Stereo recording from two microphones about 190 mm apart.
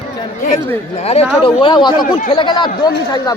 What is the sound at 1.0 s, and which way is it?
Speech, 35° left (ahead or behind).